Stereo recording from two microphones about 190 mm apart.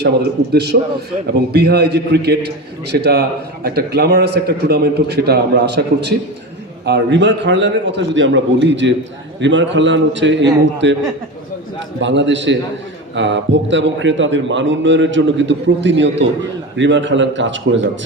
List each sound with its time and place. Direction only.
0.0 s a man's voice: 60° right (ahead or behind)
11.9 s a man's voice: 70° right (ahead or behind)